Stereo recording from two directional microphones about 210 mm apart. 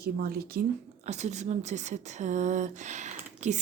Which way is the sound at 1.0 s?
35° right (ahead or behind).